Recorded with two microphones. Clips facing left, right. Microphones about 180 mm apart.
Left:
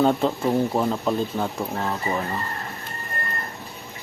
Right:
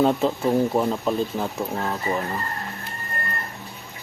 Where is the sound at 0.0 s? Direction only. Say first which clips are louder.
Even; centre (ahead or behind).